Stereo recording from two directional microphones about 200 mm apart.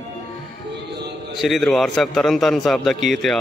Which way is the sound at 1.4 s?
Centre (ahead or behind).